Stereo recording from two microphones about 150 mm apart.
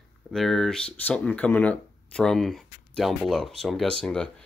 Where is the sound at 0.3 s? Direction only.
Centre (ahead or behind).